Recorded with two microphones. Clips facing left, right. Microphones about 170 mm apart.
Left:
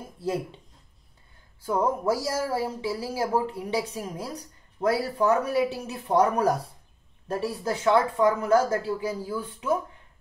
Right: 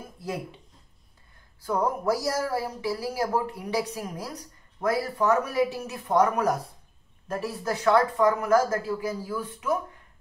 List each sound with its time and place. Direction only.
1.6 s speech: 25° left (ahead or behind)